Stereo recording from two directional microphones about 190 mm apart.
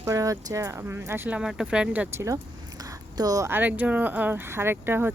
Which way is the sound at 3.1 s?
20° right (ahead or behind).